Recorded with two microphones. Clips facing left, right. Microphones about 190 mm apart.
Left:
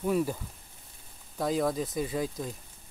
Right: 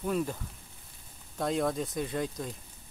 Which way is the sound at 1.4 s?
Centre (ahead or behind).